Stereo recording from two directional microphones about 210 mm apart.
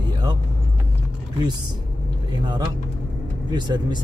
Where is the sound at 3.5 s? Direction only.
20° right (ahead or behind).